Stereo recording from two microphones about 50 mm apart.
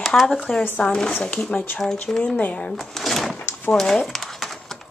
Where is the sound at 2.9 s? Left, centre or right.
Centre.